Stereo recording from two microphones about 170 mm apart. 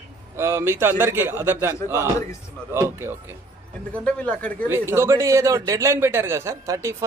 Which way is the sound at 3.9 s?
5° left (ahead or behind).